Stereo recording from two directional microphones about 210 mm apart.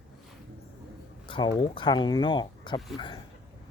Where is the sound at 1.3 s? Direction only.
20° left (ahead or behind).